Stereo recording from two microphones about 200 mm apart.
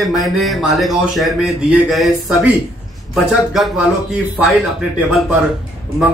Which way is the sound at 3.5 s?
Centre (ahead or behind).